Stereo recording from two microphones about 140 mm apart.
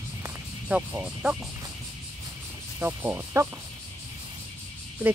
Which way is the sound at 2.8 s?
15° right (ahead or behind).